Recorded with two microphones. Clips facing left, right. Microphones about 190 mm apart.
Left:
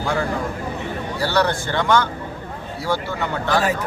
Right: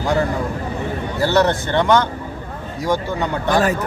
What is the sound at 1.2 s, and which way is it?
Speech, 20° right (ahead or behind).